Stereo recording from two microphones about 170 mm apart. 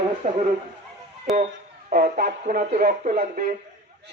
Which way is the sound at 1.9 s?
60° right (ahead or behind).